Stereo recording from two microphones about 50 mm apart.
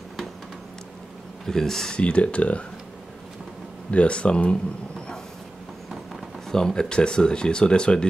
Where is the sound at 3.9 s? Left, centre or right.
Left.